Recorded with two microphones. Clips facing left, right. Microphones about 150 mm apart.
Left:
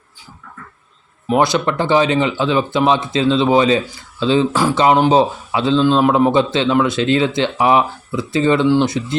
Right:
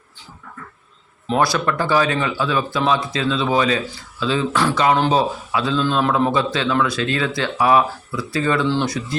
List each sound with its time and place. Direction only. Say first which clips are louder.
1.3 s speech: left 3 dB; 20° left (ahead or behind)